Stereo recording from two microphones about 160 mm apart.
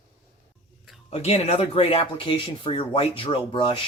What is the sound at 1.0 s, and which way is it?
Speech, 40° left (ahead or behind).